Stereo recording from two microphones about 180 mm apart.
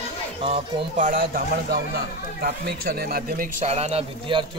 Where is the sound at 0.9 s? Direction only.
50° right (ahead or behind).